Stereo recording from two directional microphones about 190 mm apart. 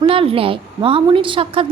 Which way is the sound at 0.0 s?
30° right (ahead or behind).